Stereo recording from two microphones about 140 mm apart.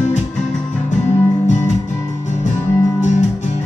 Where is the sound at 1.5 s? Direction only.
60° left (ahead or behind).